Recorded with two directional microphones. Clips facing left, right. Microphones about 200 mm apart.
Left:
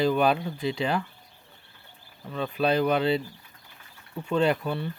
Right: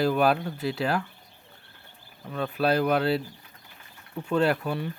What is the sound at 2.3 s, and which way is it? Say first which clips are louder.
Speech: even; 5° right (ahead or behind).